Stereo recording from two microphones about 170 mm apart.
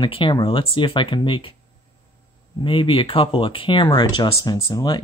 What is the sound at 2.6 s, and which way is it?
Speech, 30° left (ahead or behind).